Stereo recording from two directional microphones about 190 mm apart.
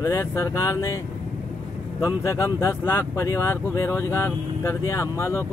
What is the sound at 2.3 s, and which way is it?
Speech, 15° left (ahead or behind).